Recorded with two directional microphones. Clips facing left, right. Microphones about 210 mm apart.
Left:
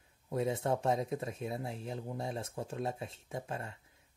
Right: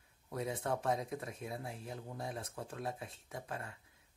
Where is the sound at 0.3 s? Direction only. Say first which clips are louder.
Left 5 dB; 25° left (ahead or behind).